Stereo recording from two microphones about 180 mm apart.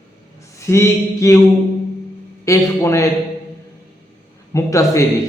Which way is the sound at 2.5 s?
15° left (ahead or behind).